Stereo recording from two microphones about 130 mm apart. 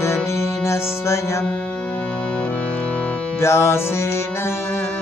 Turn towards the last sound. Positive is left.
turn(degrees=20)  # may be behind; listen again after turning